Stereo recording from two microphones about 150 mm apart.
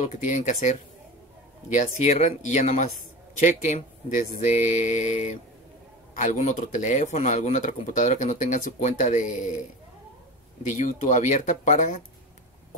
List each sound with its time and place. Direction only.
0.0 s speech: 55° left (ahead or behind)
10.6 s speech: 55° left (ahead or behind)